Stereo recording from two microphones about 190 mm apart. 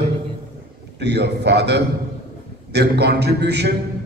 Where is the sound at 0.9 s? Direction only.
60° right (ahead or behind).